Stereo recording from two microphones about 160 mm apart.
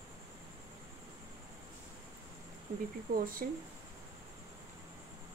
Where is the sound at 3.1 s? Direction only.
60° right (ahead or behind).